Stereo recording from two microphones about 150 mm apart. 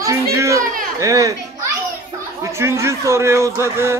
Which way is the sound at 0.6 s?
70° right (ahead or behind).